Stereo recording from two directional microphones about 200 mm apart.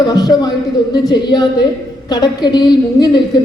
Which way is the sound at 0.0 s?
20° left (ahead or behind).